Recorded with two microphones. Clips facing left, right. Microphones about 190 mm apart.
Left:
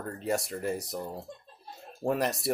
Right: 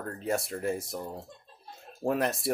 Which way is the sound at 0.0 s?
Centre (ahead or behind).